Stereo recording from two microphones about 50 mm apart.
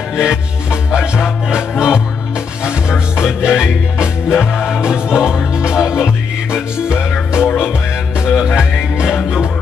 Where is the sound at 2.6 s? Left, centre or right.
Centre.